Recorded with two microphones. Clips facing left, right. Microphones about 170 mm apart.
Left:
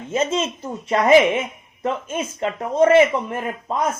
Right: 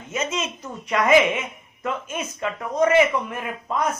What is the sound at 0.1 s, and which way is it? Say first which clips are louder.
A woman's voice: left 6 dB; 30° left (ahead or behind).